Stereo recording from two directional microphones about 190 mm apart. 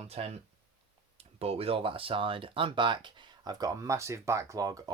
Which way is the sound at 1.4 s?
30° right (ahead or behind).